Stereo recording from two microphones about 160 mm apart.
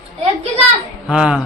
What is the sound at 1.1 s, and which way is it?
Speech, 5° right (ahead or behind).